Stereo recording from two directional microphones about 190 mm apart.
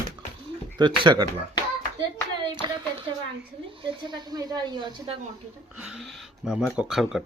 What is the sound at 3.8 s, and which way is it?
Speech, 25° right (ahead or behind).